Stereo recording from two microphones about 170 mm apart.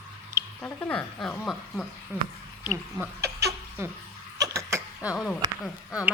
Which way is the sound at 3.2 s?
75° right (ahead or behind).